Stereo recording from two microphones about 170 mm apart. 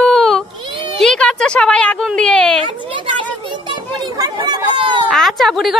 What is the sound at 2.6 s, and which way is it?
Speech, 30° right (ahead or behind).